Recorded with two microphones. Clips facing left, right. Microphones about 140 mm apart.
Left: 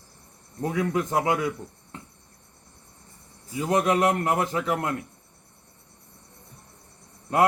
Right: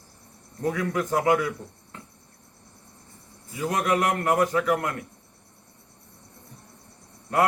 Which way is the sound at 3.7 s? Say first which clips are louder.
Left 3 dB; 25° left (ahead or behind).